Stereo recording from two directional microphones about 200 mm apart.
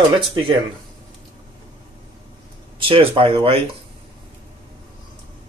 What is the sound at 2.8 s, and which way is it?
Speech, 25° right (ahead or behind).